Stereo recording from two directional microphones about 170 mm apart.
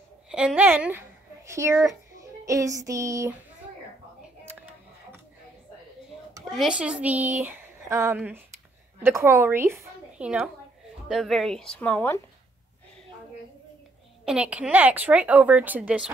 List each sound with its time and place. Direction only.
0.3 s speech: 5° right (ahead or behind)
2.4 s a sound: 20° right (ahead or behind)
6.5 s a woman's voice: 5° right (ahead or behind)
14.2 s speech: 5° right (ahead or behind)